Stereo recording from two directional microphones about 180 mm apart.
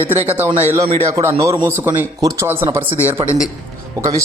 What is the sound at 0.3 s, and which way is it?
A man's voice, 10° right (ahead or behind).